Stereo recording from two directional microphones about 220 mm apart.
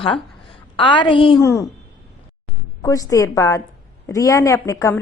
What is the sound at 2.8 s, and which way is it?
A woman's voice, 15° left (ahead or behind).